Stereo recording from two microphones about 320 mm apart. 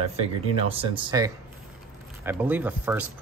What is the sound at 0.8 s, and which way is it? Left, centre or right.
Speech, centre.